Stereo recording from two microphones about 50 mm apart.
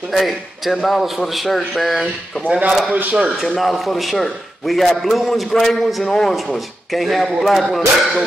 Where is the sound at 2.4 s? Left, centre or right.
Right.